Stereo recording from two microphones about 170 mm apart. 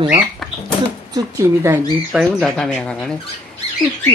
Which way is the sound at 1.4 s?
15° right (ahead or behind).